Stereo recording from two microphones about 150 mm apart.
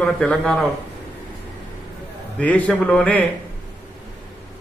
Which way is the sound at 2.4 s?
10° left (ahead or behind).